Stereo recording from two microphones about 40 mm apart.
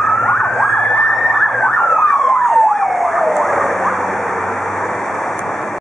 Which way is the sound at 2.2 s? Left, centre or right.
Centre.